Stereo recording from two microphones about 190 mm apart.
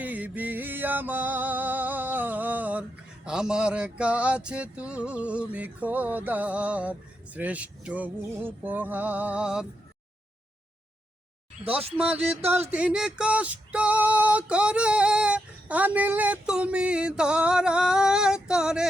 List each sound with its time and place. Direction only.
0.0 s music: 10° right (ahead or behind)
11.9 s music: 10° right (ahead or behind)
12.4 s music: 35° right (ahead or behind)
12.7 s female singing: 5° right (ahead or behind)